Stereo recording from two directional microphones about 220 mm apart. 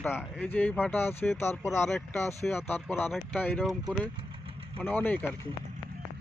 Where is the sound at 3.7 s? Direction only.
20° right (ahead or behind).